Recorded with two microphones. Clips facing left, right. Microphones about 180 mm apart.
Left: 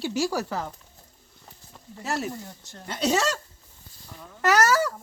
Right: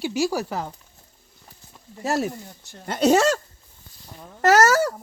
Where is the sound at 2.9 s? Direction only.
50° right (ahead or behind).